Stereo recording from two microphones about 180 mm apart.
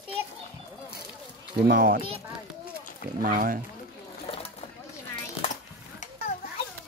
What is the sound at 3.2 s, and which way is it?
Speech, 50° right (ahead or behind).